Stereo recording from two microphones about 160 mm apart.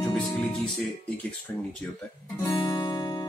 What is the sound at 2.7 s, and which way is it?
Music, 30° left (ahead or behind).